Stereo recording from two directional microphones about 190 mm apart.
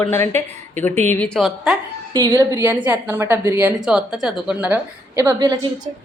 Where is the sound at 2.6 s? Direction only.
10° right (ahead or behind).